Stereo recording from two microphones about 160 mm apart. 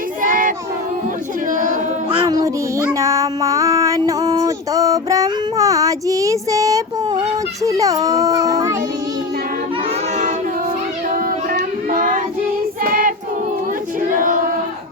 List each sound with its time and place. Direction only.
0.2 s child singing: 55° right (ahead or behind)
1.5 s a sound: 50° right (ahead or behind)
2.1 s child singing: 25° right (ahead or behind)
7.6 s baby cry: 20° right (ahead or behind)
11.1 s child singing: 55° right (ahead or behind)
12.8 s choir: 60° right (ahead or behind)
14.1 s female singing: 55° right (ahead or behind)